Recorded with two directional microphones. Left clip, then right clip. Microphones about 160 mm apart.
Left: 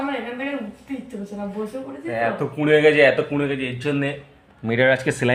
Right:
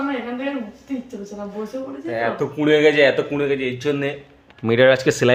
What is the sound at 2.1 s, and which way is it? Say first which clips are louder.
Speech: even; 15° right (ahead or behind).